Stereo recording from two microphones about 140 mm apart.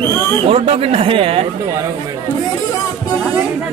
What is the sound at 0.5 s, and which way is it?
Speech, 45° right (ahead or behind).